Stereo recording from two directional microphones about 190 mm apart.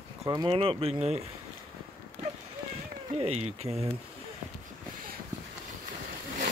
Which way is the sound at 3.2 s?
35° right (ahead or behind).